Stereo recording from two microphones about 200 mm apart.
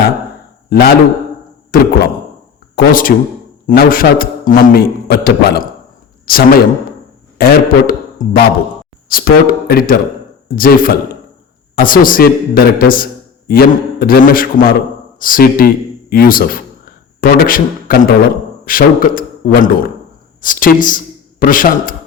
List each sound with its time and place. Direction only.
0.7 s a man's voice: 50° left (ahead or behind)